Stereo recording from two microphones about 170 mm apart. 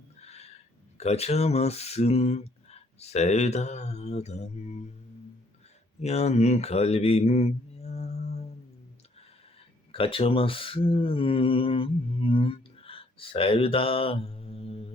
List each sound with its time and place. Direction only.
0.2 s a sound: 40° left (ahead or behind)
0.9 s speech: 40° left (ahead or behind)
6.0 s mantra: 40° left (ahead or behind)
9.9 s speech: 35° left (ahead or behind)